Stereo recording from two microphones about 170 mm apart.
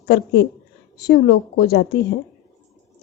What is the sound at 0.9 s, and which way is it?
A woman's voice, 65° left (ahead or behind).